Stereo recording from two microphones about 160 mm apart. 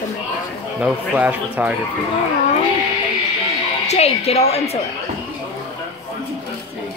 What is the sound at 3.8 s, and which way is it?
Music, 40° left (ahead or behind).